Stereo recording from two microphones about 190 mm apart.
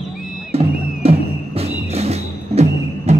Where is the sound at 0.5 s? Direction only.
30° right (ahead or behind).